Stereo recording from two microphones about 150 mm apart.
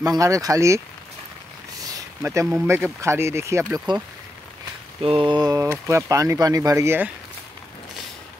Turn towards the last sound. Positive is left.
turn(degrees=-15)  # may be behind; listen again after turning